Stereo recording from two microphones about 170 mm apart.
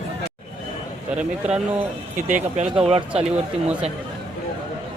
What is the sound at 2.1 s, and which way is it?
Speech, 50° right (ahead or behind).